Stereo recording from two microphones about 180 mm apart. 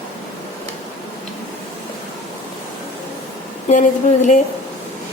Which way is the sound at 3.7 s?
45° left (ahead or behind).